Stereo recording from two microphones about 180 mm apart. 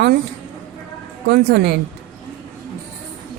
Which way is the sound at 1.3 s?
70° right (ahead or behind).